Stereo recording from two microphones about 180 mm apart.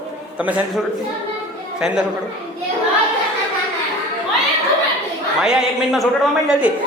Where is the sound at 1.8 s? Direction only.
5° right (ahead or behind).